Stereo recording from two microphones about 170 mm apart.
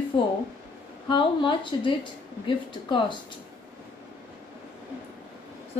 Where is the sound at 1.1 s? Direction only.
30° left (ahead or behind).